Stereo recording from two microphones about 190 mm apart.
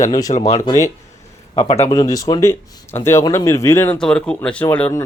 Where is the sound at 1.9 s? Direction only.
20° left (ahead or behind).